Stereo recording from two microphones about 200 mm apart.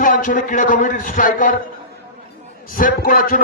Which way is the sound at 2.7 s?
45° left (ahead or behind).